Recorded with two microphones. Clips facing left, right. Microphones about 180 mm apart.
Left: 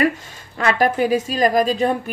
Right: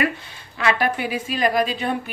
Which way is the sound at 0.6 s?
40° left (ahead or behind).